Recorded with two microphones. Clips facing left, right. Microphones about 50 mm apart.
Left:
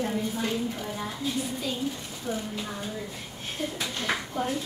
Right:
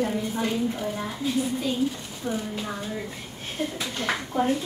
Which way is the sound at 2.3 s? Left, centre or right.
Right.